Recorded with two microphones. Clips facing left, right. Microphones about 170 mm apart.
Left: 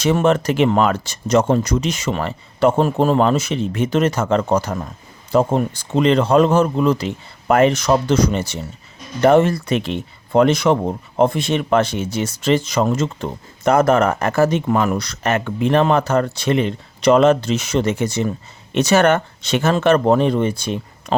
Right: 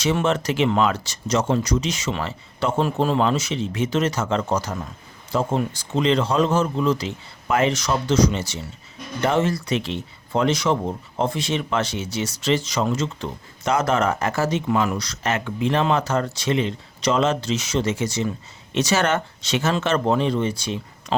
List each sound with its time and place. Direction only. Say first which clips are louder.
0.0 s speech: left 5 dB; 50° left (ahead or behind)